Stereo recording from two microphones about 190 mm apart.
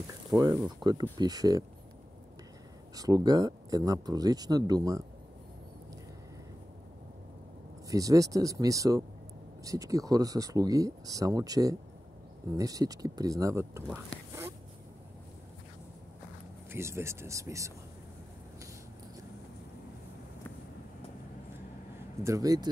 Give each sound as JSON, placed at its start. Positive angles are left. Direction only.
{"t": 0.4, "sound": "speech", "side_deg": -20}
{"t": 3.0, "sound": "speech", "side_deg": -20}
{"t": 7.9, "sound": "speech", "side_deg": -20}
{"t": 16.7, "sound": "speech", "side_deg": -15}
{"t": 22.2, "sound": "speech", "side_deg": -20}